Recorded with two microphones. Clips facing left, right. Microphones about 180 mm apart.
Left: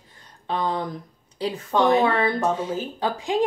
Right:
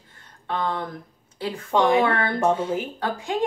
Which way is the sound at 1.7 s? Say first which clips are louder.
Even; 10° right (ahead or behind).